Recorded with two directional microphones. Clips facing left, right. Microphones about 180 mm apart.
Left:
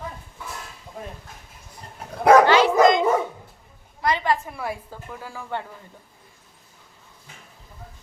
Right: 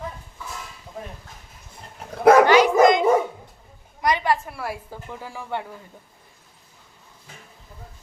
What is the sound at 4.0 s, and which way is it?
Speech, 15° right (ahead or behind).